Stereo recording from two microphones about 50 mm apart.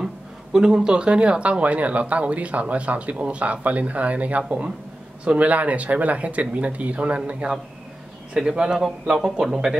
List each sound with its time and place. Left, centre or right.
0.0 s speech: centre